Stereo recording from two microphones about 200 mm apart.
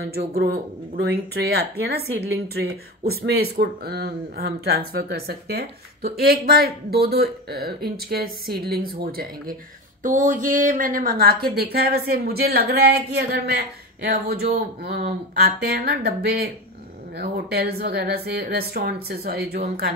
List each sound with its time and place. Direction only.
0.3 s a woman's voice: 50° right (ahead or behind)